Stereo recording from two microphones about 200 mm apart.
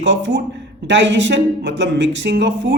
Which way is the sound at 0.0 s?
65° right (ahead or behind).